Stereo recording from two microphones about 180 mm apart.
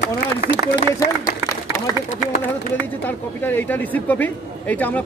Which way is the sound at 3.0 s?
10° left (ahead or behind).